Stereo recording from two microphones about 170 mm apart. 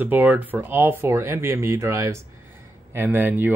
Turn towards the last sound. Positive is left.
turn(degrees=-10)  # may be behind; listen again after turning